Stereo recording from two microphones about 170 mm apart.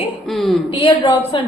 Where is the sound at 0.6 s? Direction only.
30° left (ahead or behind).